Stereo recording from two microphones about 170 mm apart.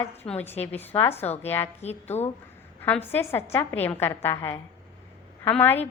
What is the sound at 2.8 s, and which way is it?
A woman's voice, 10° left (ahead or behind).